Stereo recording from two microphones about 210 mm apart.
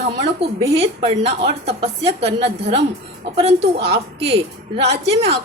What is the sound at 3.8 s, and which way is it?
A woman's voice, 25° right (ahead or behind).